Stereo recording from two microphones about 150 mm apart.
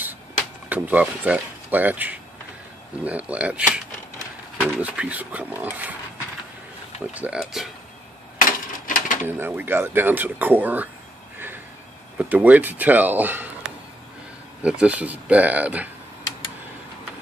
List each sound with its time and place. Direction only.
0.7 s speech: 10° right (ahead or behind)
7.2 s speech: 5° right (ahead or behind)
8.4 s a sound: 65° left (ahead or behind)
9.3 s speech: 15° right (ahead or behind)
11.3 s a sound: 15° right (ahead or behind)
12.2 s speech: 10° right (ahead or behind)
14.6 s speech: 10° right (ahead or behind)